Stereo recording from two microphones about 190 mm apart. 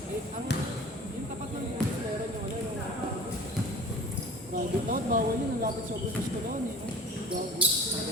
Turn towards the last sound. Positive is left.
turn(degrees=-5)  # may be behind; listen again after turning